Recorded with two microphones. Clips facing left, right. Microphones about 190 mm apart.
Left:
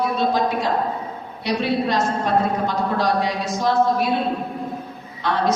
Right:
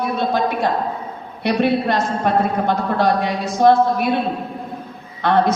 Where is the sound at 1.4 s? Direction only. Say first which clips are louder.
Right 4 dB; 55° right (ahead or behind).